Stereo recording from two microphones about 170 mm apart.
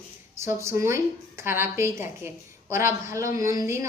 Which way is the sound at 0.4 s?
15° right (ahead or behind).